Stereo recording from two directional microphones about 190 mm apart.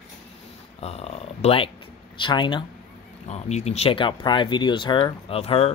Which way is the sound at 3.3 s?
35° left (ahead or behind).